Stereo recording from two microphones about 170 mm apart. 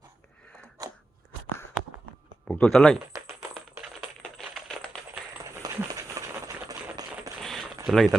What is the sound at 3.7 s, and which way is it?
Typing, 5° right (ahead or behind).